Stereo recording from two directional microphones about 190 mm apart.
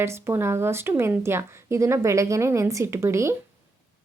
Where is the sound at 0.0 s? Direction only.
15° right (ahead or behind).